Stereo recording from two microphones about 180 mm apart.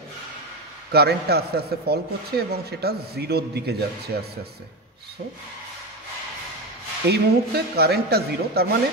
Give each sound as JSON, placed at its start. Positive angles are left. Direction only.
{"t": 0.9, "sound": "a man's voice", "side_deg": -60}
{"t": 7.1, "sound": "a man's voice", "side_deg": -60}